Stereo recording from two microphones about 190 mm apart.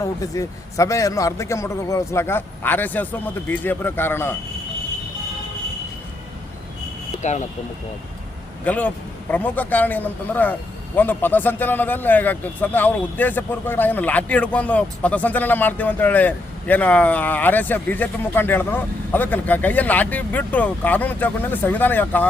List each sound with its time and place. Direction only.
0.0 s a man's voice: 15° left (ahead or behind)
7.2 s speech: 40° left (ahead or behind)
8.6 s a man's voice: 10° left (ahead or behind)